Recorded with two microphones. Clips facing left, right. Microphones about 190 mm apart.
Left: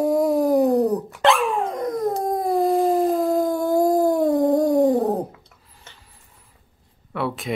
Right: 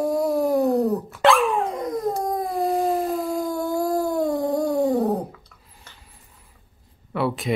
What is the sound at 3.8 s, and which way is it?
Dog, 20° left (ahead or behind).